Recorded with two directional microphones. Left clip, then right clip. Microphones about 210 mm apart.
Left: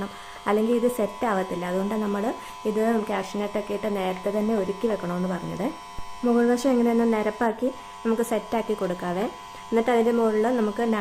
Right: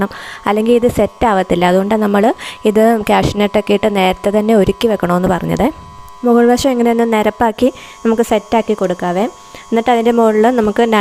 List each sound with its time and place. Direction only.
0.0 s a woman's voice: 50° right (ahead or behind)